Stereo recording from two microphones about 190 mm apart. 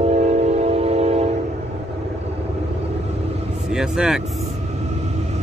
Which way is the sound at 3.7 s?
5° right (ahead or behind).